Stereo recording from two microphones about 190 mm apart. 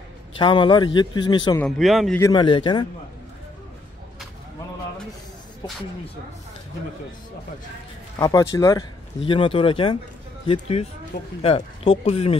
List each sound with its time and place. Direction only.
0.4 s a man's voice: 25° left (ahead or behind)
1.6 s speech: centre (ahead or behind)
2.1 s a man's voice: 20° left (ahead or behind)
8.2 s a man's voice: 15° left (ahead or behind); by 12.4 s 35° left (ahead or behind)